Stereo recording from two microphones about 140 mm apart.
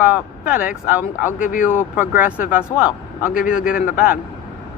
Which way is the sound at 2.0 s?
10° right (ahead or behind).